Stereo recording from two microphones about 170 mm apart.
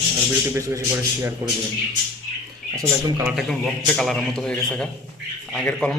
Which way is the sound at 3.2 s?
Centre (ahead or behind).